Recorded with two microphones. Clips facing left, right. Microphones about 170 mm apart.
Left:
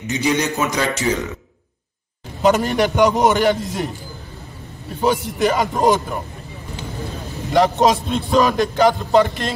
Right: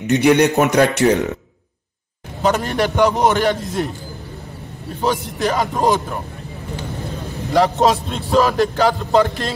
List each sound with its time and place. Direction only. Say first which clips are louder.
0.0 s a man's voice: right 7 dB; 60° right (ahead or behind)
2.4 s a man's voice: left 2 dB; 5° left (ahead or behind)
5.0 s a man's voice: left 2 dB; 5° left (ahead or behind)
7.5 s a man's voice: even; centre (ahead or behind)